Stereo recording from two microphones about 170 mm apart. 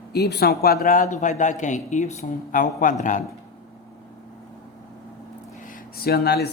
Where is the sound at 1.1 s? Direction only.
45° left (ahead or behind).